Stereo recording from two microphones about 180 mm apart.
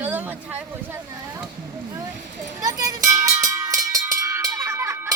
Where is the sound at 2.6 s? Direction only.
20° right (ahead or behind).